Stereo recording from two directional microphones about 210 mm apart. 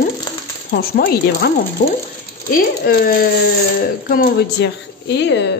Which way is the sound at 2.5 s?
45° left (ahead or behind).